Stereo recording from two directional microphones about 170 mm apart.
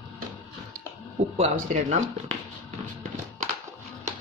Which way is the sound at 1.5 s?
50° right (ahead or behind).